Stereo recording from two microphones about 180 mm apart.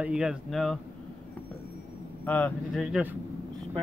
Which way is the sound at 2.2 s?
10° left (ahead or behind).